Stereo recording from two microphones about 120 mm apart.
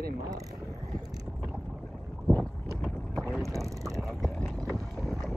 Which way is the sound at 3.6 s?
25° right (ahead or behind).